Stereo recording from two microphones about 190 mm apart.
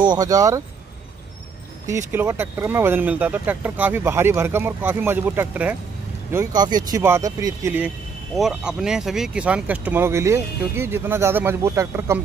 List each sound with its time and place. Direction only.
0.0 s speech: 20° right (ahead or behind)
1.9 s speech: 15° right (ahead or behind)
6.3 s speech: 20° right (ahead or behind)
8.4 s speech: 5° right (ahead or behind)